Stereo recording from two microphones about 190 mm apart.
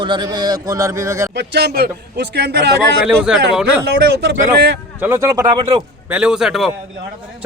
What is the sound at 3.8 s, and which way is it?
Speech, 60° right (ahead or behind).